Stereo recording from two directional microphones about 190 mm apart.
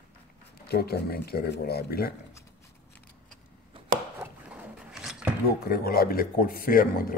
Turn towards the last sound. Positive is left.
turn(degrees=50)  # may be behind; listen again after turning